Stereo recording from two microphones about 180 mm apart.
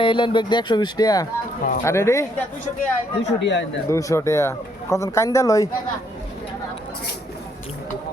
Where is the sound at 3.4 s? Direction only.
80° left.